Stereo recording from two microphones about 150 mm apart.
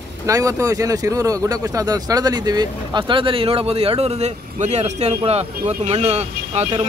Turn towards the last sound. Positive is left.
turn(degrees=-45)  # may be behind; listen again after turning